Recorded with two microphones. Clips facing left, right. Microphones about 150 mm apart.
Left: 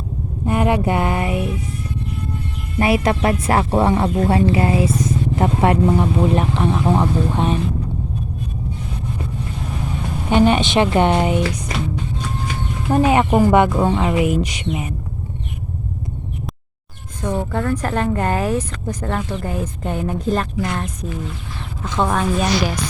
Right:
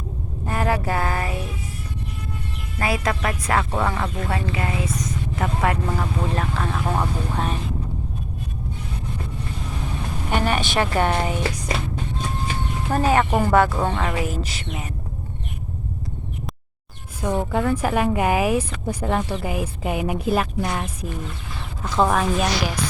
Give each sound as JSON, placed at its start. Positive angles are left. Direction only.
{"t": 0.4, "sound": "speech", "side_deg": 20}
{"t": 2.7, "sound": "speech", "side_deg": 25}
{"t": 10.2, "sound": "speech", "side_deg": 20}
{"t": 13.1, "sound": "speech", "side_deg": 15}
{"t": 17.2, "sound": "a woman's voice", "side_deg": -10}